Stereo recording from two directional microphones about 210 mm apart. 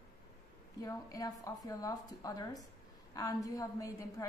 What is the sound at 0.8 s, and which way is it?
A woman's voice, 15° left (ahead or behind).